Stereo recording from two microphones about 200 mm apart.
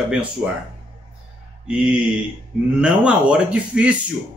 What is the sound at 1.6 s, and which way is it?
Speech, 5° right (ahead or behind).